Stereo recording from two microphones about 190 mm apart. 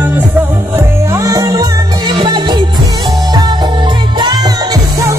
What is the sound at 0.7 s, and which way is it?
Music, 15° right (ahead or behind).